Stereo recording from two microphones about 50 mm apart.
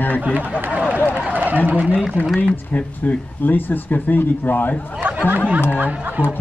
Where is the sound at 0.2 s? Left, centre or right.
Right.